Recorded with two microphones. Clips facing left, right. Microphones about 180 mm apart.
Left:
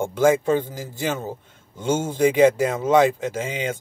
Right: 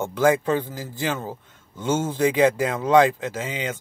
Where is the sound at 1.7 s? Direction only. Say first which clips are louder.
Left 1 dB; 15° left (ahead or behind).